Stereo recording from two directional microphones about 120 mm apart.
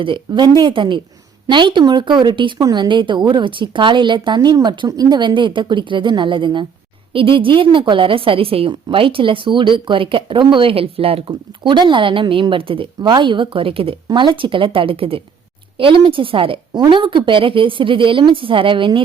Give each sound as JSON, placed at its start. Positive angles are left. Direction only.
{"t": 0.3, "sound": "a woman's voice", "side_deg": -35}